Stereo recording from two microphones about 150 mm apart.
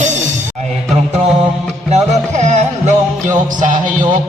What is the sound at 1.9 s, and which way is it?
Music, 50° right (ahead or behind).